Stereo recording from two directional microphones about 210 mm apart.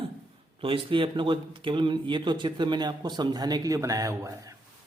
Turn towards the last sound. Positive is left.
turn(degrees=-15)  # may be behind; listen again after turning